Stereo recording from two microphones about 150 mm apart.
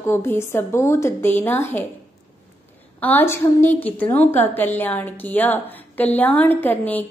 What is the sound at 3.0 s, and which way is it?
A woman's voice, 10° left (ahead or behind).